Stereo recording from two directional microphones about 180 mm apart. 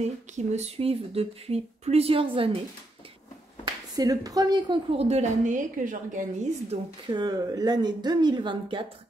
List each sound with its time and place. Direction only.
0.0 s a woman's voice: 40° right (ahead or behind)
3.6 s a woman's voice: 20° right (ahead or behind); by 6.8 s 45° right (ahead or behind)
7.1 s speech: 25° right (ahead or behind)